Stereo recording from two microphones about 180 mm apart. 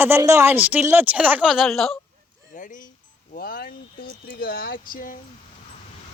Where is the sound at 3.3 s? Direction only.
55° left (ahead or behind).